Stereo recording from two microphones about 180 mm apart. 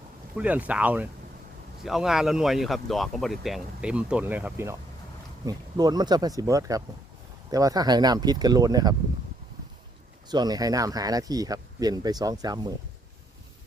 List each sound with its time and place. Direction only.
0.3 s speech: 10° right (ahead or behind)
10.2 s speech: 25° right (ahead or behind)